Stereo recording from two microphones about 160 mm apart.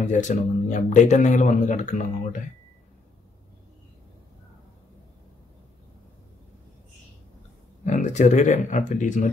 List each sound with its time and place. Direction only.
0.0 s speech: 50° left (ahead or behind)
7.8 s speech: 50° left (ahead or behind)